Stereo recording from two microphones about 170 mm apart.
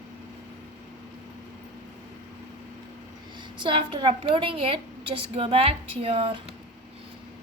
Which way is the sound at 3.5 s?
30° right (ahead or behind).